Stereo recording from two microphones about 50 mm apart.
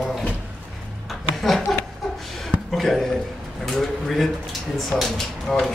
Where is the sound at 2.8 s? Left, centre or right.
Centre.